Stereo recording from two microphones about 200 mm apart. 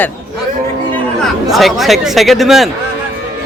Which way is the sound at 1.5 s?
Centre (ahead or behind).